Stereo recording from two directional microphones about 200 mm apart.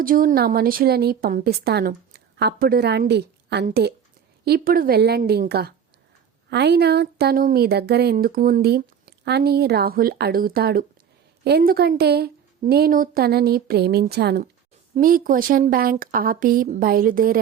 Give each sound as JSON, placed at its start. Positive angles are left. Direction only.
{"t": 0.0, "sound": "speech", "side_deg": -45}